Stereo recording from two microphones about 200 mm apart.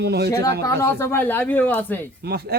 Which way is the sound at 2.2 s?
50° right (ahead or behind).